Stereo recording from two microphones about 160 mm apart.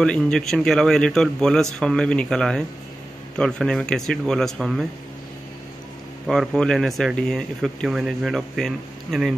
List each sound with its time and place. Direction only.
0.0 s speech: 5° left (ahead or behind)
6.2 s speech: centre (ahead or behind)